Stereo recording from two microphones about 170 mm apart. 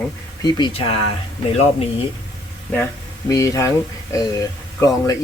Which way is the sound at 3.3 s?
20° left (ahead or behind).